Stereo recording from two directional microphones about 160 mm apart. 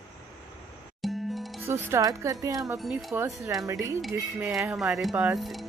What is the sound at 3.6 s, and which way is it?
Speech, 20° right (ahead or behind).